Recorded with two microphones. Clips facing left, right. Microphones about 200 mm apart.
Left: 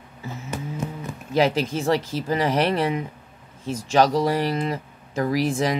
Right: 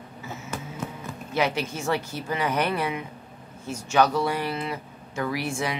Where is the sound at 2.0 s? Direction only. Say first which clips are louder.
Left 5 dB; 90° left.